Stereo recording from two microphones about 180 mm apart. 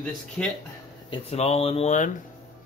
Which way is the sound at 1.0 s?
35° left (ahead or behind).